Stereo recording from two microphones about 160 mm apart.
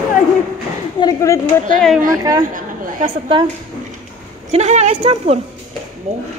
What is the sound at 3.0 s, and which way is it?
Speech, 30° right (ahead or behind).